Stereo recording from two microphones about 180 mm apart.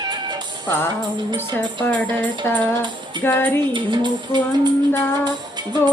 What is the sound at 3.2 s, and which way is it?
Speech, 10° left (ahead or behind).